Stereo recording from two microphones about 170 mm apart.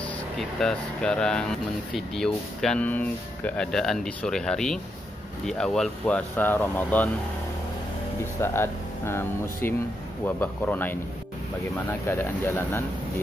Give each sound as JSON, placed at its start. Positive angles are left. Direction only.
{"t": 0.0, "sound": "speech", "side_deg": 5}
{"t": 8.4, "sound": "speech", "side_deg": 15}